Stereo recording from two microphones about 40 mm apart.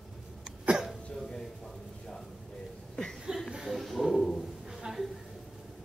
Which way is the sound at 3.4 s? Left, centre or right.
Centre.